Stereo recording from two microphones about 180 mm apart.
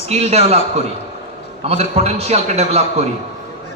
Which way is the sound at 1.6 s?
35° right (ahead or behind).